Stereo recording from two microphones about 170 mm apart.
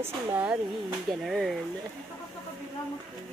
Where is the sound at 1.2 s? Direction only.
Centre (ahead or behind).